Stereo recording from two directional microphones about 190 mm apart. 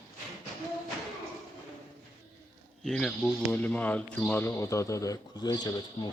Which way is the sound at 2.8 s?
Centre (ahead or behind).